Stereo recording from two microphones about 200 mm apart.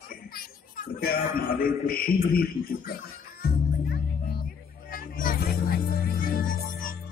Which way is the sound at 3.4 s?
50° left (ahead or behind).